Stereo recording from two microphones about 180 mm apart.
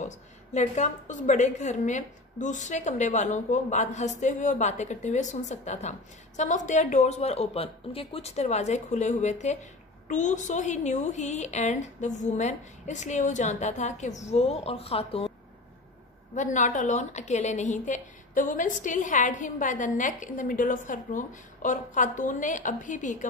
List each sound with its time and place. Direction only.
0.0 s a woman's voice: 40° left (ahead or behind)
16.3 s a woman's voice: 45° left (ahead or behind)